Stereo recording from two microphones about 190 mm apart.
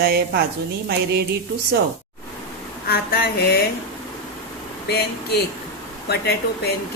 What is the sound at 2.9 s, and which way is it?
Speech, 55° left (ahead or behind).